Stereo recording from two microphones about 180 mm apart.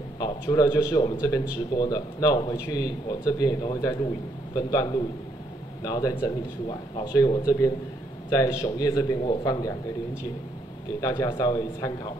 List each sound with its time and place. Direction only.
0.2 s speech: 20° left (ahead or behind)
11.0 s speech: 20° left (ahead or behind)